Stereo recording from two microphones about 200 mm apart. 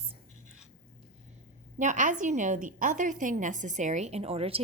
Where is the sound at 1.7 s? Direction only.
40° right (ahead or behind).